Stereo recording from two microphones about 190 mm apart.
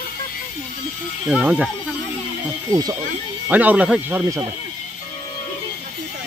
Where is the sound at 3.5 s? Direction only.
10° right (ahead or behind).